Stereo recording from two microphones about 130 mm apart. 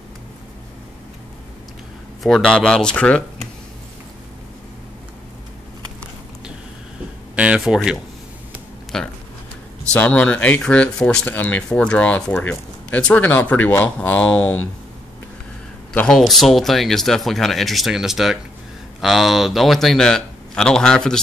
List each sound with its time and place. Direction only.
2.2 s speech: 5° left (ahead or behind)
7.3 s speech: 10° right (ahead or behind); by 14.6 s 10° left (ahead or behind)
15.9 s speech: 5° left (ahead or behind)